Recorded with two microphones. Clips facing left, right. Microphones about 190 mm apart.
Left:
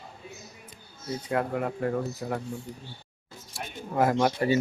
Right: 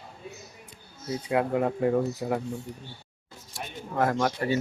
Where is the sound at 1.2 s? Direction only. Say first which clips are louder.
Right 3 dB; 15° right (ahead or behind).